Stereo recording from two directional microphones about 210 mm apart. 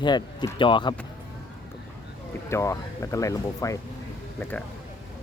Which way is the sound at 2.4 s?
15° left (ahead or behind).